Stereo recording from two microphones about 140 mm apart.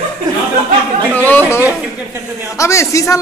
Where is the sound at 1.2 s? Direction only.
10° left (ahead or behind).